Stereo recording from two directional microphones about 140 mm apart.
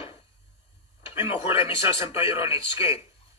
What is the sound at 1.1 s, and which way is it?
A man's voice, 15° right (ahead or behind).